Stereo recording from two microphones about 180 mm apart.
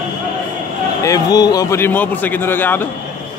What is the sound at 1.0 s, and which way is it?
A man's voice, 20° left (ahead or behind).